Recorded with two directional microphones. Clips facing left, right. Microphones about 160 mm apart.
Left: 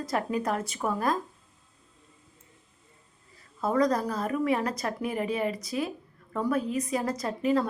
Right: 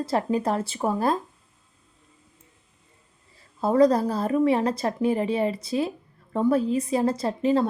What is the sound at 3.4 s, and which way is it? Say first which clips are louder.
Speech: right 7 dB; 30° right (ahead or behind).